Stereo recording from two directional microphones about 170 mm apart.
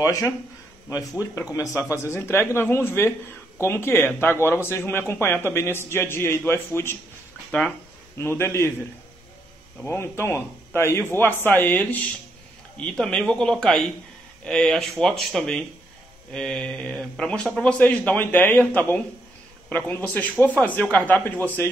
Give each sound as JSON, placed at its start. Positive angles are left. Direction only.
{"t": 0.0, "sound": "speech", "side_deg": 20}
{"t": 1.5, "sound": "speech", "side_deg": 20}
{"t": 8.2, "sound": "speech", "side_deg": 15}
{"t": 9.8, "sound": "a man's voice", "side_deg": 15}